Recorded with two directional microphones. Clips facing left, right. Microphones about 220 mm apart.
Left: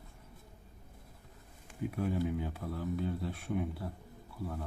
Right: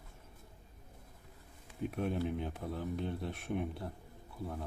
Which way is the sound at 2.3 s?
20° right (ahead or behind).